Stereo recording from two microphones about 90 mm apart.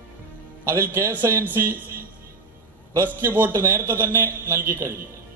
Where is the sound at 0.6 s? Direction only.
25° right (ahead or behind).